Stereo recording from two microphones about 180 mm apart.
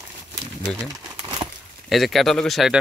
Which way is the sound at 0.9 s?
20° right (ahead or behind).